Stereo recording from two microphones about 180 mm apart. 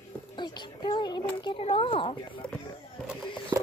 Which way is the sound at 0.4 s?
25° left (ahead or behind).